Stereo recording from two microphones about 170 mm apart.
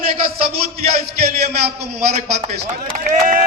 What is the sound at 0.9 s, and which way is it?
A man's voice, 40° right (ahead or behind).